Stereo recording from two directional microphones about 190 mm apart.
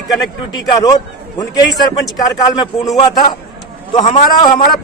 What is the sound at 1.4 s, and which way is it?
A man's voice, 20° left (ahead or behind).